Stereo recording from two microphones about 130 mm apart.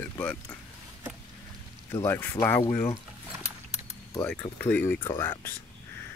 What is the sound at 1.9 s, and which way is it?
Speech, 20° left (ahead or behind).